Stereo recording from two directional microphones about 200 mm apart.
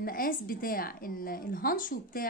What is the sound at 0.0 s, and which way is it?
Speech, 45° left (ahead or behind).